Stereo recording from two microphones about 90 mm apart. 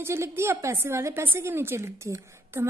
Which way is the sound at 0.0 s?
30° right (ahead or behind).